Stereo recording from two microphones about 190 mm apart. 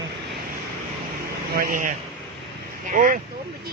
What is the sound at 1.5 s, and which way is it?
Speech, 45° right (ahead or behind).